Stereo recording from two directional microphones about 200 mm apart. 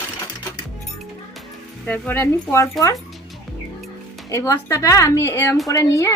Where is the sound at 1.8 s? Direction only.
10° left (ahead or behind).